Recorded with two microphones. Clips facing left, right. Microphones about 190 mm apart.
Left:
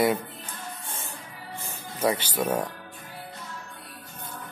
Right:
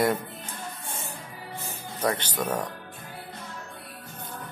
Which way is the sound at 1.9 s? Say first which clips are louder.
Left 2 dB; 10° left (ahead or behind).